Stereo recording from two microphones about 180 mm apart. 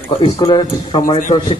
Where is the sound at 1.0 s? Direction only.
45° left (ahead or behind).